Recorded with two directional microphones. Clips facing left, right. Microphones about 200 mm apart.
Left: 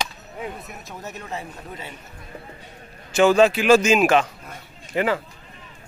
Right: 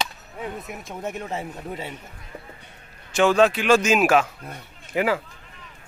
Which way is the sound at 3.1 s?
5° left (ahead or behind).